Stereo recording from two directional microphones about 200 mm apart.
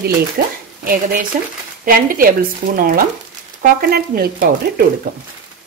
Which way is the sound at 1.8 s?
45° right (ahead or behind).